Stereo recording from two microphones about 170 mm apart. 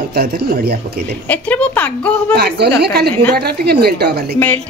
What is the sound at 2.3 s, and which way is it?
Speech, 75° right (ahead or behind).